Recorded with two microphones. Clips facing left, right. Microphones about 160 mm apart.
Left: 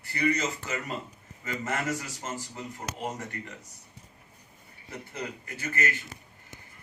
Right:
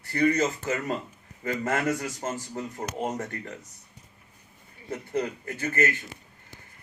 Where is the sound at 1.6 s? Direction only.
55° right (ahead or behind).